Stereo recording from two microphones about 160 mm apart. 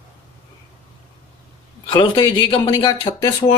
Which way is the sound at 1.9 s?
30° left (ahead or behind).